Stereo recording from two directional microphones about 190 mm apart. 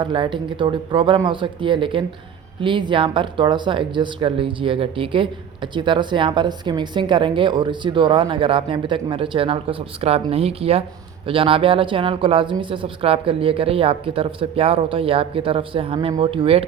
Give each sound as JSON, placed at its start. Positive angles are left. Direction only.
{"t": 0.0, "sound": "speech", "side_deg": -25}